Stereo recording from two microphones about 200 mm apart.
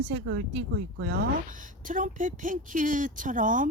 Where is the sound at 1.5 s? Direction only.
40° right (ahead or behind).